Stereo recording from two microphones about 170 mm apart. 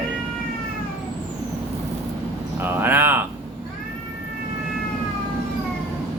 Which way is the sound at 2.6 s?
10° right (ahead or behind).